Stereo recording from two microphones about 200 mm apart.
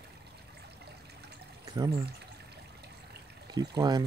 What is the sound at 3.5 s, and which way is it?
Speech, 20° right (ahead or behind).